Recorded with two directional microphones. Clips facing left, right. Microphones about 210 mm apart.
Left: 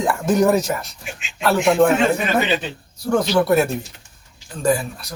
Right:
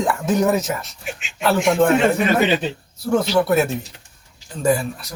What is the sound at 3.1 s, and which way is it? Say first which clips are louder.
Speech: even; centre (ahead or behind).